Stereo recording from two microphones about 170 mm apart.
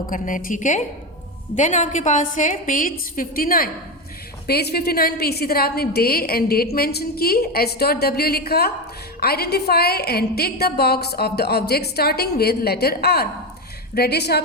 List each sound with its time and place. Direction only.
0.1 s a woman's voice: 50° left (ahead or behind); by 14.4 s 75° left (ahead or behind)